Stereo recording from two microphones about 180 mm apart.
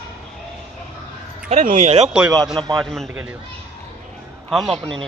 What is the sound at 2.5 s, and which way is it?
Speech, 25° right (ahead or behind).